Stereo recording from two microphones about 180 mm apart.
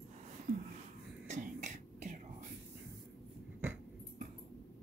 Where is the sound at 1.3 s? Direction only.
40° right (ahead or behind).